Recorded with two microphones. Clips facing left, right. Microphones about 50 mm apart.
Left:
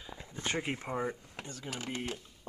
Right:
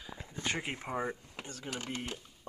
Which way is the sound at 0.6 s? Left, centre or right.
Centre.